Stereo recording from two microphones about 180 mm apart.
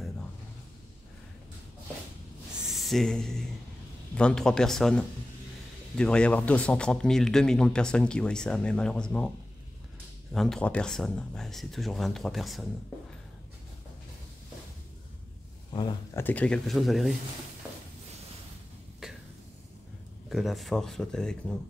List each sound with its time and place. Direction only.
2.6 s speech: centre (ahead or behind)
10.3 s speech: centre (ahead or behind)
15.7 s speech: 25° left (ahead or behind)
16.2 s speech: 10° left (ahead or behind)
20.2 s speech: centre (ahead or behind)